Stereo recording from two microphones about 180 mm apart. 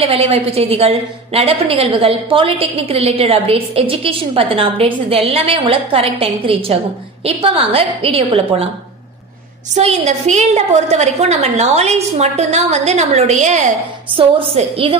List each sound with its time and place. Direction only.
0.0 s a woman's voice: 35° right (ahead or behind)
9.8 s a woman's voice: 40° right (ahead or behind)